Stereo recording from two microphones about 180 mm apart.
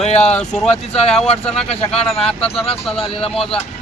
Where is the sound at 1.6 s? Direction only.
35° left (ahead or behind).